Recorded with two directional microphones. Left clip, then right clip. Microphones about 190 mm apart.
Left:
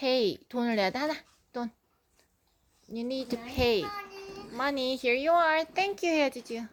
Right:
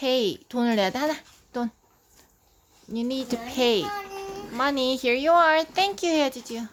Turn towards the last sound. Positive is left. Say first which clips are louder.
# right 3 dB
turn(degrees=0)  # may be behind; listen again after turning